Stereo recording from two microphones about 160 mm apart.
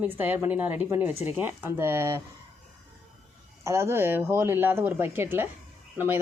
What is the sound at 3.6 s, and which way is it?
A woman's voice, 15° right (ahead or behind).